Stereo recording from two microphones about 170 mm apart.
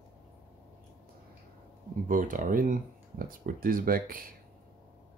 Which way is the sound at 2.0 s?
50° right (ahead or behind).